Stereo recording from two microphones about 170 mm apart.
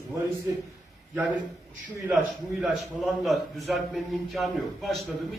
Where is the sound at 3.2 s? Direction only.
Centre (ahead or behind).